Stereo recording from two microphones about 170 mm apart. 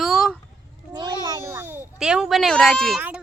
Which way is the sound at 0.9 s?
25° right (ahead or behind).